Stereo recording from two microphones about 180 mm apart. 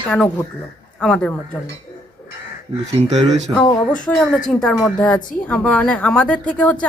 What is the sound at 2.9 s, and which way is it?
Speech, 35° right (ahead or behind).